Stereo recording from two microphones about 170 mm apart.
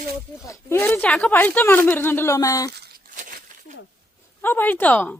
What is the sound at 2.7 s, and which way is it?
Tearing, 75° right (ahead or behind).